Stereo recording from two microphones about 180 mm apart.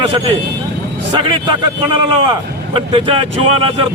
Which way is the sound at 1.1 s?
25° right (ahead or behind).